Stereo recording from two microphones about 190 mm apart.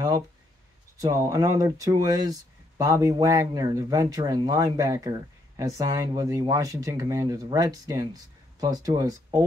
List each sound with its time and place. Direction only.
1.1 s speech: 20° right (ahead or behind)